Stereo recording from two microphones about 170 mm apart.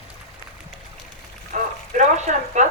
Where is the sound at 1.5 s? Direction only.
45° right (ahead or behind).